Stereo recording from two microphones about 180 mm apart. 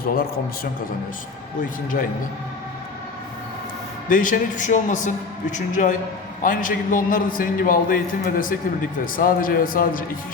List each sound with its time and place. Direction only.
0.0 s a man's voice: 55° left (ahead or behind)
4.1 s a man's voice: 45° left (ahead or behind)